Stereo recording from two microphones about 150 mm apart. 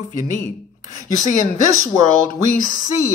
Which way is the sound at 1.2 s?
60° left (ahead or behind).